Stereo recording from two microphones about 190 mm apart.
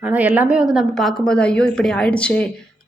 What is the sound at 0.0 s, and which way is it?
A woman's voice, 10° right (ahead or behind).